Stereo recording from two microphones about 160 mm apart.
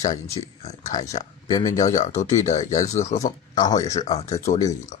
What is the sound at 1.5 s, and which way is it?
Speech, 25° left (ahead or behind).